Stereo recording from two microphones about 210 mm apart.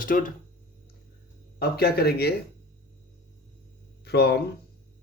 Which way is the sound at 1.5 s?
50° left (ahead or behind).